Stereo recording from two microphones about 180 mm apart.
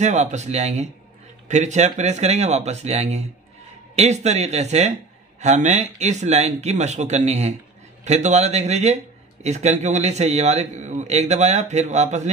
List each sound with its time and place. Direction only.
0.0 s a man's voice: 40° right (ahead or behind)